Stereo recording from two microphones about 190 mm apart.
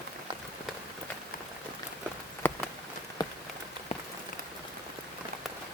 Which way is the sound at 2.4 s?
10° left (ahead or behind).